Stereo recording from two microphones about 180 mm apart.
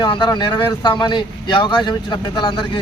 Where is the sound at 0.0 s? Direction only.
25° left (ahead or behind).